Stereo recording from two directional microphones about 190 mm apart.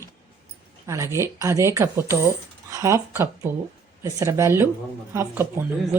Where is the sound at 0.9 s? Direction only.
15° right (ahead or behind).